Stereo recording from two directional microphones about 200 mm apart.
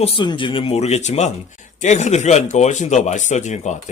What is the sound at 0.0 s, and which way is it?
Speech, 25° left (ahead or behind).